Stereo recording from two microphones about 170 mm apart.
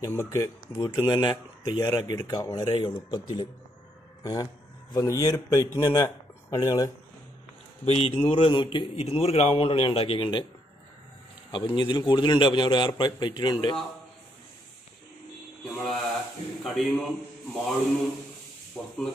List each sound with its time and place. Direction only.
0.0 s speech: 15° left (ahead or behind)
7.8 s speech: 35° left (ahead or behind)
11.5 s speech: 25° left (ahead or behind)
15.7 s speech: centre (ahead or behind)
18.8 s speech: 5° left (ahead or behind)